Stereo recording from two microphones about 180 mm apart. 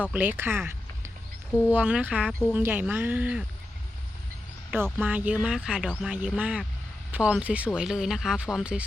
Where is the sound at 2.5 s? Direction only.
10° right (ahead or behind).